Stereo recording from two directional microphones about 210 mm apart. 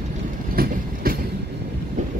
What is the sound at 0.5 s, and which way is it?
Train, 45° right (ahead or behind).